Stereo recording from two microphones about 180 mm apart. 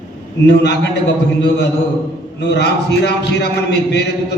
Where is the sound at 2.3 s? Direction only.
70° left (ahead or behind).